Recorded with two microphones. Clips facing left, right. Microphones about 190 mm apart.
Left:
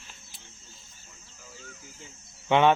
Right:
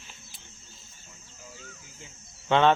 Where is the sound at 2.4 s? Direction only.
15° left (ahead or behind).